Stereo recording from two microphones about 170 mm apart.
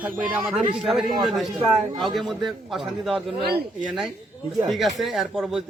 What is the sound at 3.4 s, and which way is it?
Speech, 50° right (ahead or behind).